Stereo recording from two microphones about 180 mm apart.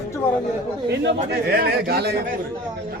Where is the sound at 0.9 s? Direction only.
65° right (ahead or behind).